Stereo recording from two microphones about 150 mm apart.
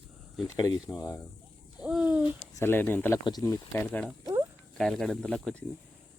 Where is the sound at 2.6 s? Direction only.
15° left (ahead or behind).